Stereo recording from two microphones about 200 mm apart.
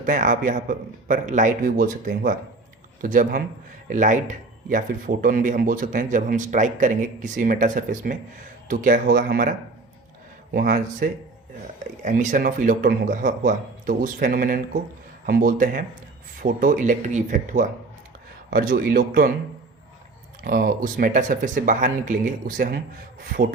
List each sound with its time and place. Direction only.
0.0 s a man's voice: 40° right (ahead or behind)
10.5 s a man's voice: 45° right (ahead or behind)
20.4 s a man's voice: 45° right (ahead or behind)